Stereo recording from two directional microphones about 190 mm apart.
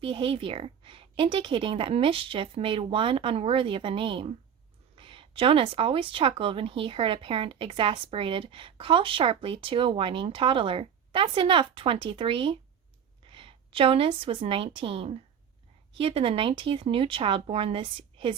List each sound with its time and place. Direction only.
0.0 s a woman's voice: 25° right (ahead or behind)